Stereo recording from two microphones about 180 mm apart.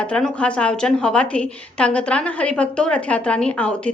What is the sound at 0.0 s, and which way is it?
A woman's voice, 5° left (ahead or behind).